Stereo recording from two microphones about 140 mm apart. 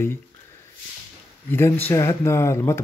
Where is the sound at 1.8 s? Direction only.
20° left (ahead or behind).